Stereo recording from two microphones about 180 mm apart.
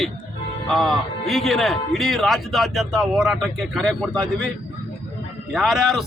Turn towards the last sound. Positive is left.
turn(degrees=0)  # may be behind; listen again after turning